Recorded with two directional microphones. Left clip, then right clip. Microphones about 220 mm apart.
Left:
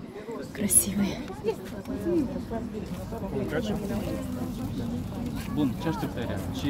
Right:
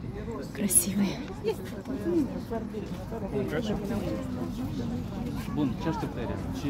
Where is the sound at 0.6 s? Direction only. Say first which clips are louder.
Left 1 dB; 5° right (ahead or behind).